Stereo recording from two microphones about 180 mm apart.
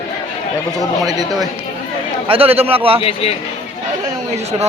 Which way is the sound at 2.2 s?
30° right (ahead or behind).